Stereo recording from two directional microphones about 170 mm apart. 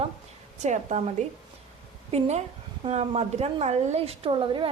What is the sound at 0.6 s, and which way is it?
A woman's voice, 45° right (ahead or behind).